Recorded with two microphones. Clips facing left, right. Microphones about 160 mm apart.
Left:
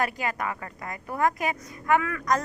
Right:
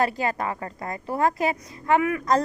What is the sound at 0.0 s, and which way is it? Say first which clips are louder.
A woman's voice: right 4 dB; 35° right (ahead or behind).